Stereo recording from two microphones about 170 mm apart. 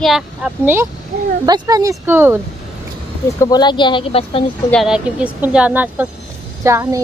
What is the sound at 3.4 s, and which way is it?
Speech, 25° left (ahead or behind).